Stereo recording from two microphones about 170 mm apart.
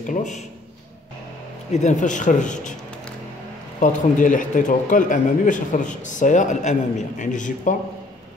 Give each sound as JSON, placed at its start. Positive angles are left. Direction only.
{"t": 0.0, "sound": "speech", "side_deg": 45}
{"t": 1.7, "sound": "speech", "side_deg": 45}
{"t": 3.8, "sound": "speech", "side_deg": 50}